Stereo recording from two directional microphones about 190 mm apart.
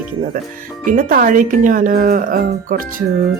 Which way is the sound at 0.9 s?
45° right (ahead or behind).